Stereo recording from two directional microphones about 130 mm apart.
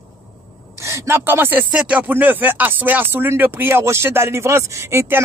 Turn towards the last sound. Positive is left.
turn(degrees=-20)  # may be behind; listen again after turning